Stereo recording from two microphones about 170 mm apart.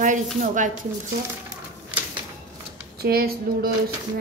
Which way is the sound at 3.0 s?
60° right (ahead or behind).